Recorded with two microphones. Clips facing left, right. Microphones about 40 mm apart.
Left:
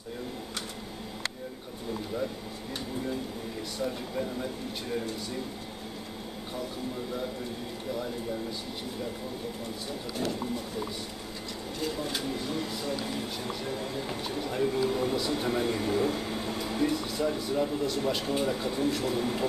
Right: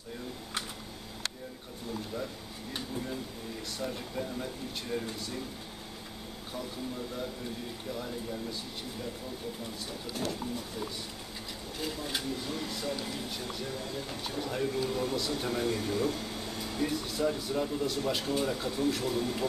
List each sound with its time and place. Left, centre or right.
3.8 s speech: centre
7.9 s speech: centre
12.3 s speech: centre